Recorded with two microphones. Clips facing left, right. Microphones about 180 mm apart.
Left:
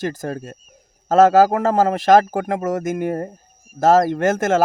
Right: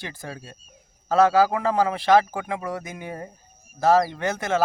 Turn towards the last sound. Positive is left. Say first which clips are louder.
# left 8 dB
turn(degrees=45)  # may be behind; listen again after turning